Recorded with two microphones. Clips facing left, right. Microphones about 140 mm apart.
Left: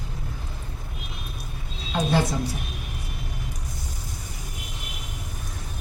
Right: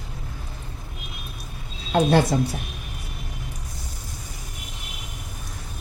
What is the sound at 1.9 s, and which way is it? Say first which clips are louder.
Speech: right 5 dB; 55° right (ahead or behind).